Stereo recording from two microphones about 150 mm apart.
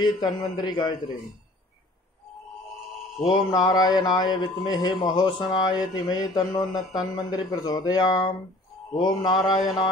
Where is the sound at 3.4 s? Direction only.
30° left (ahead or behind).